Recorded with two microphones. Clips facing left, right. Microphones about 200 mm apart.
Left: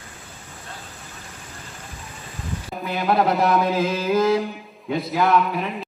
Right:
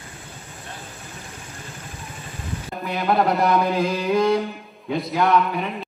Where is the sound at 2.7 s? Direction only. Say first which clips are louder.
Even; centre (ahead or behind).